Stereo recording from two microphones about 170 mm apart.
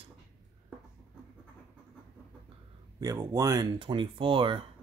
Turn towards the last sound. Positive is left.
turn(degrees=-30)  # may be behind; listen again after turning